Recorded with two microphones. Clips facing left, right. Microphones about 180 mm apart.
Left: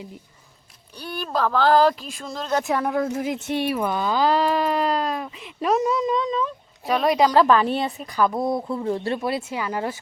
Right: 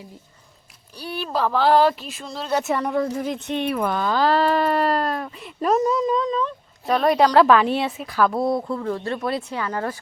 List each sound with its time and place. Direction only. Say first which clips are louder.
0.9 s speech: right 1 dB; 5° right (ahead or behind)
8.7 s speech: left 1 dB; 20° left (ahead or behind)
9.2 s speech: even; 5° left (ahead or behind)